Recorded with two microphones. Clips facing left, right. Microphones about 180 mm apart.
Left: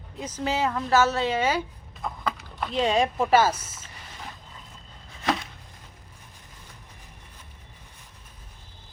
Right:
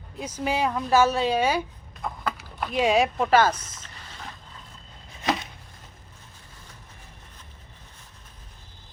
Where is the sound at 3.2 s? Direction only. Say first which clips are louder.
Even; 5° left (ahead or behind).